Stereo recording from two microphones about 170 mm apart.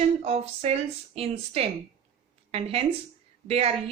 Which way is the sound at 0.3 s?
40° right (ahead or behind).